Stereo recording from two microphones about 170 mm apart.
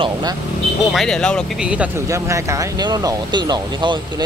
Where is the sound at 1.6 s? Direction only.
5° right (ahead or behind).